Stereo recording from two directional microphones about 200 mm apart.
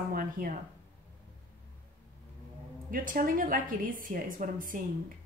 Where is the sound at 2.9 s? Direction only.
45° right (ahead or behind).